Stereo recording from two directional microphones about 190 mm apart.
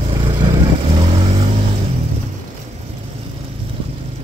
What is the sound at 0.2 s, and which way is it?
Vehicle, 25° right (ahead or behind).